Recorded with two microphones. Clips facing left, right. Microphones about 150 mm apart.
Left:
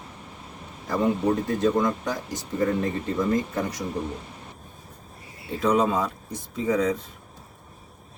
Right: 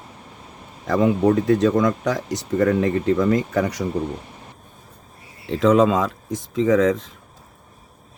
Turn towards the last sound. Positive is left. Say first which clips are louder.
# right 7 dB
turn(degrees=-90)